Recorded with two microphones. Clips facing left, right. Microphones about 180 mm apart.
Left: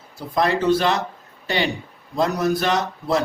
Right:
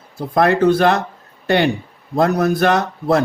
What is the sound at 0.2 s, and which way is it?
Speech, 55° right (ahead or behind).